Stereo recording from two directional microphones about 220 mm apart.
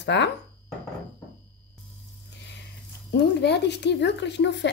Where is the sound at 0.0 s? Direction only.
55° left (ahead or behind).